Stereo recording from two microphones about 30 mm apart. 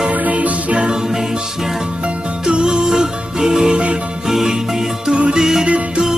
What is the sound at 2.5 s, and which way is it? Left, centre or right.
Music, right.